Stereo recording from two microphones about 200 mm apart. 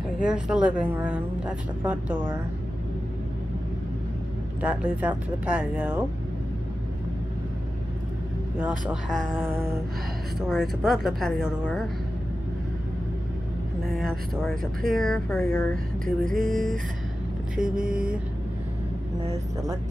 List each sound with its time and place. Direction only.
0.2 s speech: 5° right (ahead or behind)
4.6 s speech: 5° right (ahead or behind)
8.5 s speech: 5° right (ahead or behind)
10.4 s speech: centre (ahead or behind)
13.8 s speech: centre (ahead or behind)
17.8 s vehicle: 45° right (ahead or behind)